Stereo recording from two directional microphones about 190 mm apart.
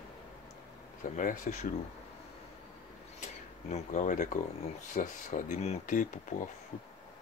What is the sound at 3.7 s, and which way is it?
Speech, 35° left (ahead or behind).